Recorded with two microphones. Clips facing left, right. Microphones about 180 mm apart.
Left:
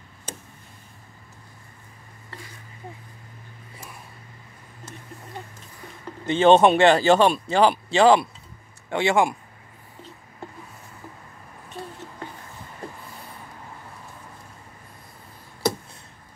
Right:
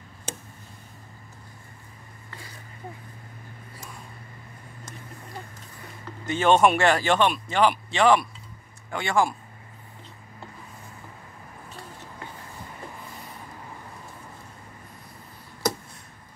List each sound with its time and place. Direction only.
6.2 s speech: 30° left (ahead or behind)